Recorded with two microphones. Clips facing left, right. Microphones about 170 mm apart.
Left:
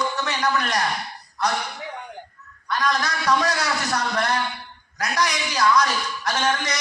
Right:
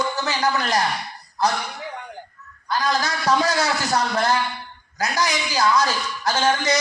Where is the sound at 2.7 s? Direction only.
25° right (ahead or behind).